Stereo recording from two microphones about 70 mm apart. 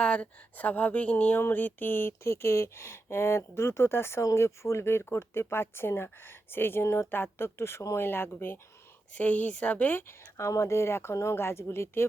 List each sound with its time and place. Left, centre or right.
0.0 s a woman's voice: centre
1.4 s a woman's voice: left